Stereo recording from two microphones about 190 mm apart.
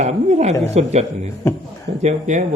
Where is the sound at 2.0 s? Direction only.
40° right (ahead or behind).